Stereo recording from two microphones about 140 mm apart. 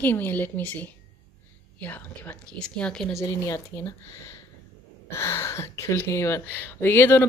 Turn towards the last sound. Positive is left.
turn(degrees=15)  # may be behind; listen again after turning